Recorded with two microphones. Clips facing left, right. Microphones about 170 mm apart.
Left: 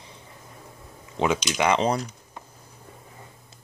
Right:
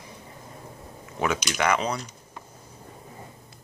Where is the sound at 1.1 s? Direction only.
20° left (ahead or behind).